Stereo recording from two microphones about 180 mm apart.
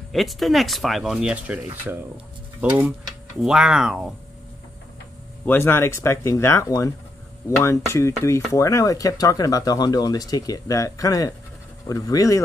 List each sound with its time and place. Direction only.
0.1 s speech: centre (ahead or behind)
3.3 s speech: 5° right (ahead or behind)
5.4 s speech: 10° left (ahead or behind)